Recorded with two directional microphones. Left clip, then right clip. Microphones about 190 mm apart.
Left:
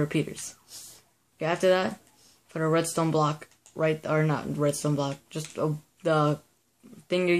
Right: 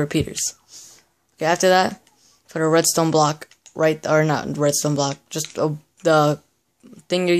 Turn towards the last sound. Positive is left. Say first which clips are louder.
# right 6 dB
turn(degrees=-30)  # may be behind; listen again after turning